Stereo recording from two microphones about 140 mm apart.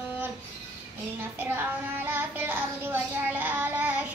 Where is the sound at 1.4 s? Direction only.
15° right (ahead or behind).